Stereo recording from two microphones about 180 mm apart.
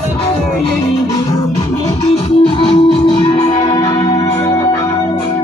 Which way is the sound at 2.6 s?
30° left (ahead or behind).